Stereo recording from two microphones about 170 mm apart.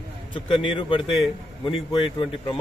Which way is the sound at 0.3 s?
30° left (ahead or behind).